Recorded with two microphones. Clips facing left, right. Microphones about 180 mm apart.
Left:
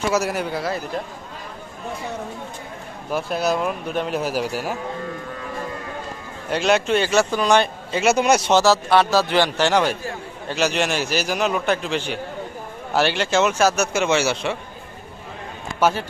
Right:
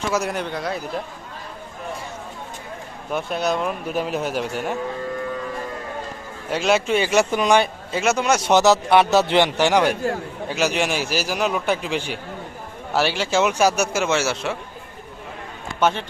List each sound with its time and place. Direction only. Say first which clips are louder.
0.0 s a man's voice: left 2 dB; 5° left (ahead or behind)
3.1 s a man's voice: left 1 dB; centre (ahead or behind)
6.5 s a man's voice: left 1 dB; 5° right (ahead or behind)
8.1 s speech: left 3 dB; 15° left (ahead or behind)
8.4 s a man's voice: right 1 dB; 15° right (ahead or behind)
9.9 s speech: right 6 dB; 60° right (ahead or behind)
10.5 s a man's voice: left 1 dB; 10° right (ahead or behind)
15.8 s a man's voice: left 1 dB; 5° left (ahead or behind)